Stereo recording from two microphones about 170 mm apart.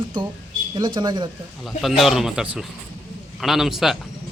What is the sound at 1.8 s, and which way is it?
Speech, centre (ahead or behind).